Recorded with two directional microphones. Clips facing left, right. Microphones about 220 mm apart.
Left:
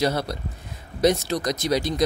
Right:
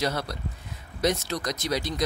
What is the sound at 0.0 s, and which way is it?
Speech, 30° left (ahead or behind).